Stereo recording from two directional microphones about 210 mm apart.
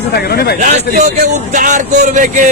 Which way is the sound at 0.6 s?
35° right (ahead or behind).